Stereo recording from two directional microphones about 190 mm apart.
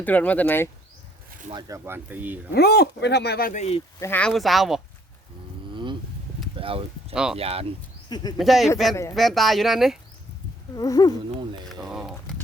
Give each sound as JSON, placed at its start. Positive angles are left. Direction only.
{"t": 0.0, "sound": "speech", "side_deg": 10}
{"t": 1.5, "sound": "speech", "side_deg": -20}
{"t": 2.5, "sound": "speech", "side_deg": 55}
{"t": 4.0, "sound": "speech", "side_deg": 10}
{"t": 5.7, "sound": "vehicle", "side_deg": -25}
{"t": 6.6, "sound": "speech", "side_deg": -30}
{"t": 7.1, "sound": "speech", "side_deg": -5}
{"t": 7.3, "sound": "speech", "side_deg": -30}
{"t": 8.1, "sound": "speech", "side_deg": 20}
{"t": 8.4, "sound": "speech", "side_deg": 0}
{"t": 10.8, "sound": "speech", "side_deg": 20}
{"t": 11.7, "sound": "a sound", "side_deg": -5}